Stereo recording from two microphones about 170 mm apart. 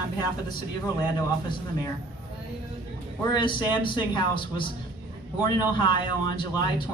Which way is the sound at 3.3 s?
30° left (ahead or behind).